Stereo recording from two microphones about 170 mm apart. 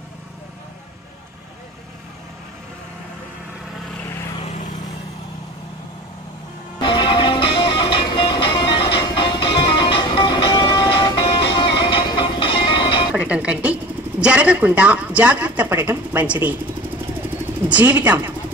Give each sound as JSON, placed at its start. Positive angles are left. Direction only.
{"t": 4.5, "sound": "vehicle", "side_deg": 45}
{"t": 6.8, "sound": "music", "side_deg": 30}
{"t": 13.1, "sound": "music", "side_deg": -5}
{"t": 14.2, "sound": "speech", "side_deg": -5}
{"t": 17.6, "sound": "speech", "side_deg": -10}